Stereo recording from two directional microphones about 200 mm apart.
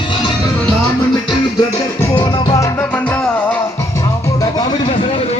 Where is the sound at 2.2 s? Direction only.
25° left (ahead or behind); by 3.5 s 10° left (ahead or behind).